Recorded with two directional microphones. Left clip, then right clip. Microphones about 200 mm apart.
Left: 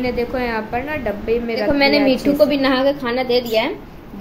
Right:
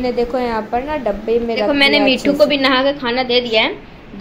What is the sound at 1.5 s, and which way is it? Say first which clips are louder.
A woman's voice: right 2 dB; 10° left (ahead or behind).